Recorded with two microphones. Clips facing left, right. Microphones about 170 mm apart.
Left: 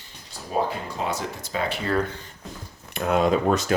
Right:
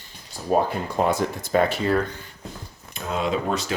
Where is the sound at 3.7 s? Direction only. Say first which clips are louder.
Left 7 dB; 50° left (ahead or behind).